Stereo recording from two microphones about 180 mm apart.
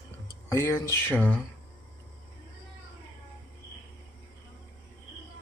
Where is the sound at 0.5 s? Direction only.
15° left (ahead or behind).